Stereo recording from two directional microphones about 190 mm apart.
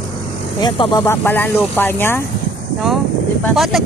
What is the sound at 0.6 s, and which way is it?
Speech, 20° left (ahead or behind).